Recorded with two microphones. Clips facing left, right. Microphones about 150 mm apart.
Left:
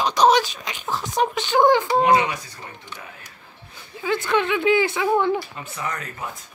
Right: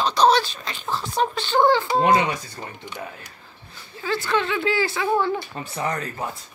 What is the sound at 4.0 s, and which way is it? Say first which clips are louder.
Speech: left 2 dB; 20° left (ahead or behind).